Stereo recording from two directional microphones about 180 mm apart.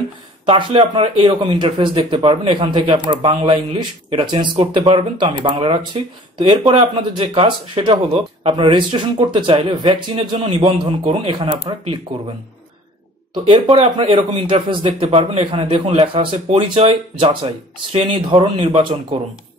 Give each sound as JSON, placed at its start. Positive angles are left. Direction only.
{"t": 0.5, "sound": "speech", "side_deg": -30}
{"t": 13.3, "sound": "speech", "side_deg": -30}